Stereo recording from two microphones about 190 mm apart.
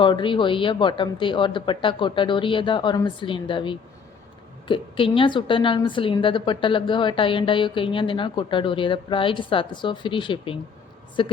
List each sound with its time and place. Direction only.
0.0 s a woman's voice: 25° left (ahead or behind)